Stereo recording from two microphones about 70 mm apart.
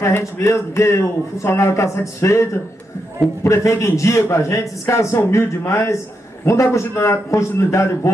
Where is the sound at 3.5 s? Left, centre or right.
Left.